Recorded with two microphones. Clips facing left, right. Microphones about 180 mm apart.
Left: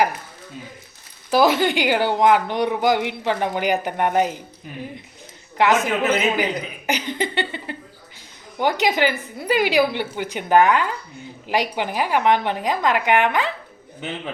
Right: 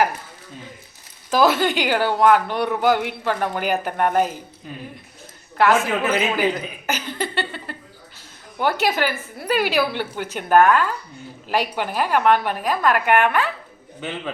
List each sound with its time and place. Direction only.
1.3 s a woman's voice: 15° left (ahead or behind)
5.5 s a woman's voice: 20° left (ahead or behind)